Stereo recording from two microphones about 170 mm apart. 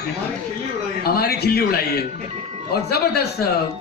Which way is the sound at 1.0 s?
70° left (ahead or behind).